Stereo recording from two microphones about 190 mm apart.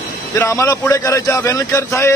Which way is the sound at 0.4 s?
15° left (ahead or behind).